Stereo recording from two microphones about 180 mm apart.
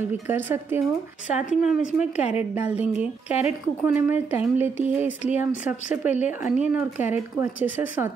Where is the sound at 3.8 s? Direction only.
10° right (ahead or behind).